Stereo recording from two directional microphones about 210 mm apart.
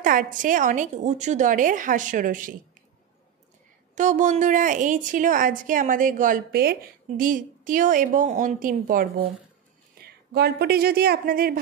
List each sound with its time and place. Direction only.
0.0 s a woman's voice: 40° right (ahead or behind)
3.9 s a woman's voice: 35° right (ahead or behind)